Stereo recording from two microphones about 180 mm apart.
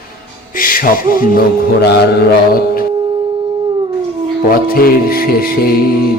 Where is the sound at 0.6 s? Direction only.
50° left (ahead or behind).